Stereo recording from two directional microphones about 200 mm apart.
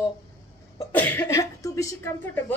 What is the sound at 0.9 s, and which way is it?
A woman's voice, 10° left (ahead or behind).